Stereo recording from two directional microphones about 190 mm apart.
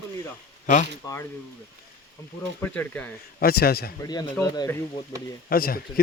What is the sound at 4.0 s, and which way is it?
Speech, 20° left (ahead or behind).